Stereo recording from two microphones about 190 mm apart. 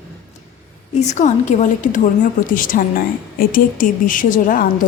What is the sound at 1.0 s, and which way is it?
A woman's voice, 40° left (ahead or behind).